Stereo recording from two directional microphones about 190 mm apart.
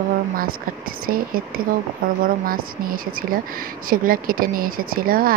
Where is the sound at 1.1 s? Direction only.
50° right (ahead or behind).